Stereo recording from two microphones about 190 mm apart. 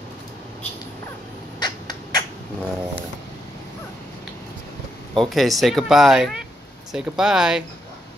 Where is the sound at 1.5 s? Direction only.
20° left (ahead or behind).